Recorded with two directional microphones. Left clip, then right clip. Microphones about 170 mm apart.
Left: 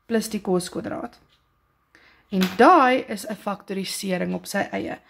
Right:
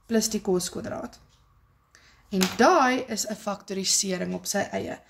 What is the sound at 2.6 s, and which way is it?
Speech, 45° left (ahead or behind).